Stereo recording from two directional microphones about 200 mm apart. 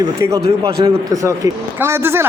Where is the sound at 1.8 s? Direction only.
10° right (ahead or behind).